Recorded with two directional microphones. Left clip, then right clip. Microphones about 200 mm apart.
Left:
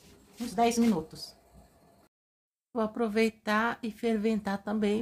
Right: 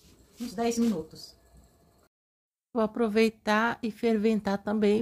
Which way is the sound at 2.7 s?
15° right (ahead or behind).